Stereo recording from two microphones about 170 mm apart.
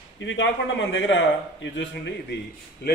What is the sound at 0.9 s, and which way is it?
Speech, 90° left.